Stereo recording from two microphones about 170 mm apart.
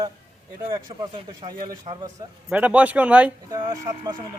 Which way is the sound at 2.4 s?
10° right (ahead or behind).